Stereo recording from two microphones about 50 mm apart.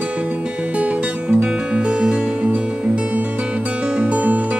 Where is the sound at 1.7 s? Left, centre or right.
Centre.